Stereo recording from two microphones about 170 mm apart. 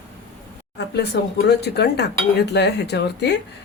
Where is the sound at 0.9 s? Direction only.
75° left (ahead or behind).